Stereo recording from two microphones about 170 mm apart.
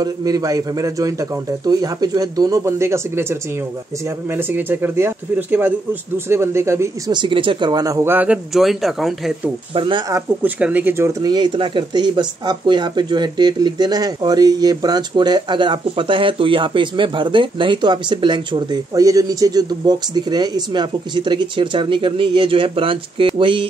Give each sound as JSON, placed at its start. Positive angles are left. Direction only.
{"t": 0.0, "sound": "speech", "side_deg": -20}
{"t": 7.2, "sound": "speech", "side_deg": -30}
{"t": 9.8, "sound": "speech", "side_deg": -30}